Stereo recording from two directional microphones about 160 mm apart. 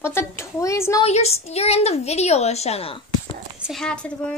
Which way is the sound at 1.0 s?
40° left (ahead or behind).